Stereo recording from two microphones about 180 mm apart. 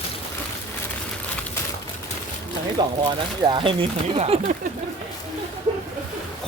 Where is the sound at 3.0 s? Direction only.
25° right (ahead or behind).